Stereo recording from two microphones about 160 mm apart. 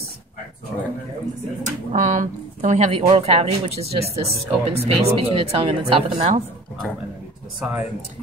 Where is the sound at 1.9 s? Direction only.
50° right (ahead or behind).